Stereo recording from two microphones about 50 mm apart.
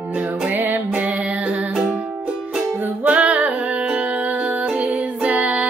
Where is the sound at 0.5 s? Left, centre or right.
Right.